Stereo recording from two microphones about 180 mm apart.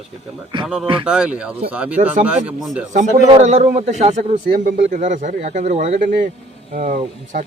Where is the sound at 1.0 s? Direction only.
5° right (ahead or behind).